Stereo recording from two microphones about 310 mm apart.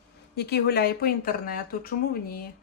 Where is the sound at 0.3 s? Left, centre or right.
Left.